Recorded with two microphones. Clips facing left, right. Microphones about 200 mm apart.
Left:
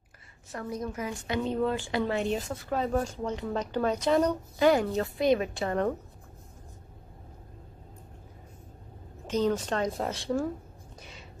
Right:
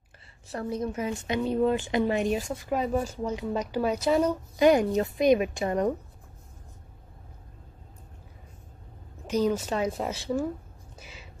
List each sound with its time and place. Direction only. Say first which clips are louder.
0.5 s a woman's voice: right 4 dB; 30° right (ahead or behind); by 4.4 s 5° right (ahead or behind)
4.6 s speech: right 3 dB; 15° right (ahead or behind)
9.3 s a woman's voice: right 1 dB; 10° right (ahead or behind)
11.0 s whispering: right 1 dB; 5° right (ahead or behind)